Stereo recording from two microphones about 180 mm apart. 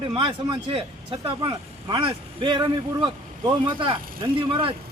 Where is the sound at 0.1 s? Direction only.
30° right (ahead or behind).